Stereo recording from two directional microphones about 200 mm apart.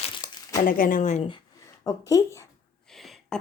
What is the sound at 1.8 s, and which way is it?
Speech, 15° left (ahead or behind).